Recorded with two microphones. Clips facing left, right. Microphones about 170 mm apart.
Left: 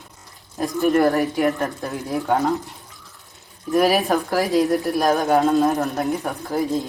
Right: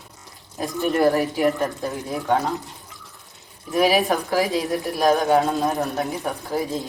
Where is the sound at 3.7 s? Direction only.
Centre (ahead or behind).